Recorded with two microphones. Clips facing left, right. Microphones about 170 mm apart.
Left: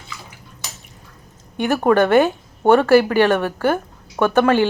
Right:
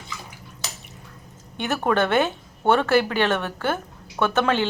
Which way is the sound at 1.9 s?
10° left (ahead or behind).